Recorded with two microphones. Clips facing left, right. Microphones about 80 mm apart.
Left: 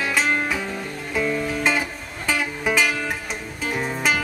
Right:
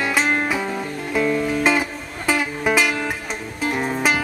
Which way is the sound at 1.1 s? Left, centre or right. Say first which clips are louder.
Right 4 dB; centre.